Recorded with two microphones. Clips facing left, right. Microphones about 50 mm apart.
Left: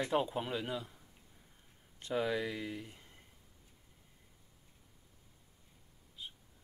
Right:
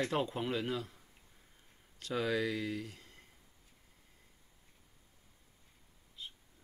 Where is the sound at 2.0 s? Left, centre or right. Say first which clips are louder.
Right 1 dB; left.